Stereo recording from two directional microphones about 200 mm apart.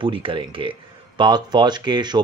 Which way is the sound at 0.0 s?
25° right (ahead or behind).